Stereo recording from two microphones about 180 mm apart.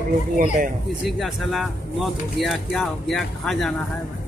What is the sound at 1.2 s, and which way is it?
Speech, centre (ahead or behind).